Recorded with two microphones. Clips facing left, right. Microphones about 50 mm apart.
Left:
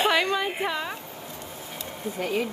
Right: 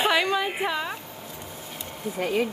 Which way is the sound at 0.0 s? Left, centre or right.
Centre.